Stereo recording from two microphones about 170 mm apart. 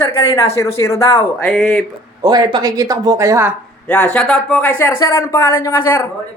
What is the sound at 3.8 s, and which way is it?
Speech, 10° left (ahead or behind).